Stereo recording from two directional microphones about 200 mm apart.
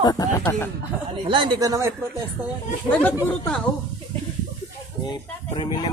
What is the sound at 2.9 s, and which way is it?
Speech, 5° left (ahead or behind).